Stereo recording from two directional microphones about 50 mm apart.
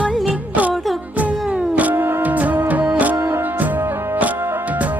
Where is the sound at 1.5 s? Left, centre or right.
Right.